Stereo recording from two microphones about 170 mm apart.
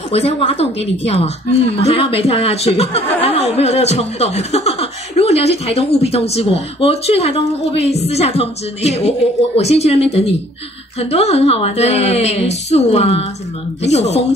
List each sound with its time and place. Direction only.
0.1 s speech: 35° left (ahead or behind)